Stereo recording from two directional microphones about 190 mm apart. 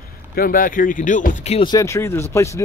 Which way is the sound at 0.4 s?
50° left (ahead or behind).